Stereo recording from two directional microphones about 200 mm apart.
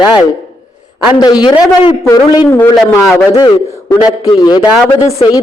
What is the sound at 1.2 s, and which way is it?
A man's voice, 20° left (ahead or behind).